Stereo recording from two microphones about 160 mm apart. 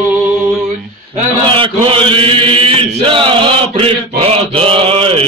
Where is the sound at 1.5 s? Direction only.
35° right (ahead or behind).